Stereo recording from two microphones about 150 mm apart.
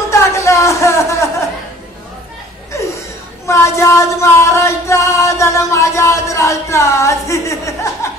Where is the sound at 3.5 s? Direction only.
20° left (ahead or behind).